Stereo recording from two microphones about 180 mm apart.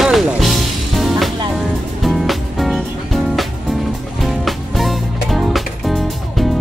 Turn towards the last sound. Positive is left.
turn(degrees=0)  # may be behind; listen again after turning